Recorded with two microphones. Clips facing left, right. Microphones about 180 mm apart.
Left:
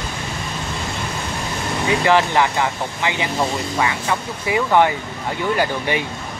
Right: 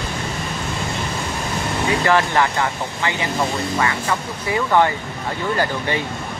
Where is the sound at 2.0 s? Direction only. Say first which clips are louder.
Left 2 dB; 15° left (ahead or behind).